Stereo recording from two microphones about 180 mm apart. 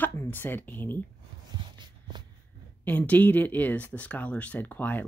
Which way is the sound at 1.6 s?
25° right (ahead or behind).